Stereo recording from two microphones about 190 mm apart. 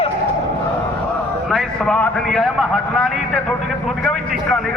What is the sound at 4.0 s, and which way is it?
Vehicle, centre (ahead or behind).